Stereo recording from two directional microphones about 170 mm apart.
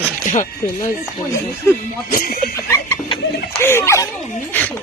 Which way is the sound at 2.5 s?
15° left (ahead or behind).